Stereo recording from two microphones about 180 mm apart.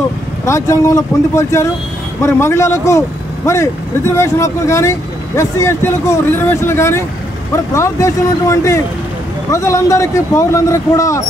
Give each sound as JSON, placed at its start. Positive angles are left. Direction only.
{"t": 0.5, "sound": "speech", "side_deg": 15}